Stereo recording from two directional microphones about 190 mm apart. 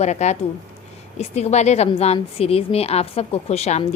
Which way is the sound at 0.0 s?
35° left (ahead or behind).